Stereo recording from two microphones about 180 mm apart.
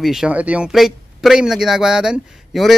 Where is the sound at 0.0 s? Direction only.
5° right (ahead or behind).